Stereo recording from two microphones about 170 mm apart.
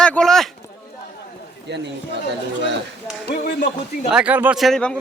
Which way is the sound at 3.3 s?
80° left.